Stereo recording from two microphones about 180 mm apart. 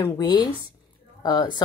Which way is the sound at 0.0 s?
20° left (ahead or behind).